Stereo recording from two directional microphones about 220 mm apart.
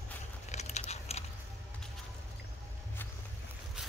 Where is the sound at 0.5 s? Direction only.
30° left (ahead or behind).